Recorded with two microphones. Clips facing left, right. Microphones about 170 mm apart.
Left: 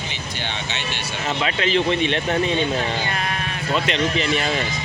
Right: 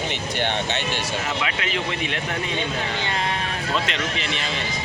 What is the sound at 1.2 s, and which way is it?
A man's voice, 30° left (ahead or behind).